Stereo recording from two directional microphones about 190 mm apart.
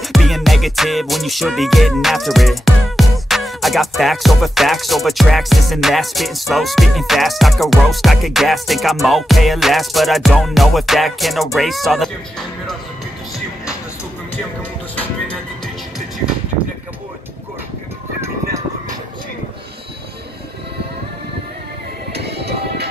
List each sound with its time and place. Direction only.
0.0 s music: centre (ahead or behind)
15.0 s music: 5° left (ahead or behind)
22.1 s music: 60° right (ahead or behind)